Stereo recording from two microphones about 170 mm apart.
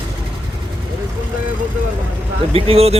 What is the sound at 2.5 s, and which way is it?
Speech, 35° right (ahead or behind).